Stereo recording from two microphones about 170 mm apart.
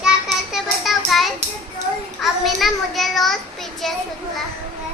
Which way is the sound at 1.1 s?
Centre (ahead or behind).